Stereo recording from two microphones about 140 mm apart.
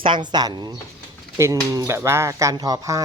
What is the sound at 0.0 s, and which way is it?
Speech, 35° right (ahead or behind).